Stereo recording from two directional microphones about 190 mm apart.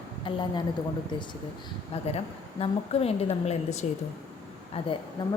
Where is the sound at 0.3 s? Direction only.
25° left (ahead or behind).